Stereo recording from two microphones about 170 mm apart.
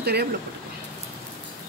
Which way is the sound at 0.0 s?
75° right (ahead or behind).